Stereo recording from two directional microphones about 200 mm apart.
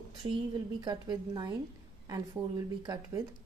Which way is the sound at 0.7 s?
20° right (ahead or behind).